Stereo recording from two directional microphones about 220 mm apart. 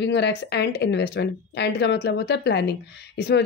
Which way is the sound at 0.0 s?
50° left (ahead or behind).